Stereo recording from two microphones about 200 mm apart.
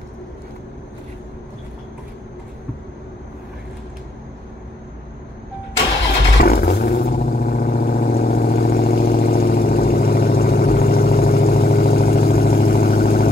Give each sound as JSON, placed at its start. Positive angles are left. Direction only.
{"t": 6.4, "sound": "vehicle", "side_deg": 50}